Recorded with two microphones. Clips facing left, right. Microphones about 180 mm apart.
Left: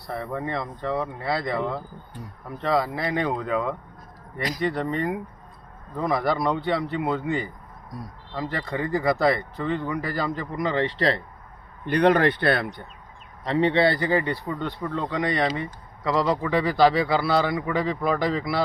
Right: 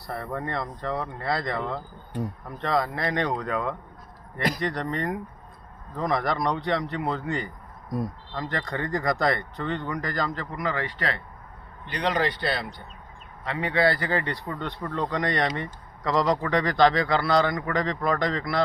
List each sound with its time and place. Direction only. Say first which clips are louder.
0.1 s a man's voice: left 2 dB; centre (ahead or behind); by 11.2 s 35° left (ahead or behind)
11.9 s speech: left 7 dB; 55° left (ahead or behind)
13.4 s a man's voice: left 4 dB; 30° left (ahead or behind); by 18.6 s 5° left (ahead or behind)